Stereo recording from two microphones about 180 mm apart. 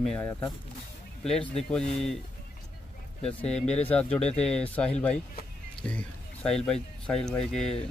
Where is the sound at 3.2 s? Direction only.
5° left (ahead or behind).